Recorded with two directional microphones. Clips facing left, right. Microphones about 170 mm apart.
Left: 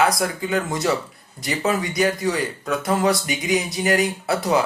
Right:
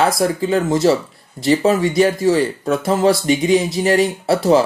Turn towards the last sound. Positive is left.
turn(degrees=-30)  # may be behind; listen again after turning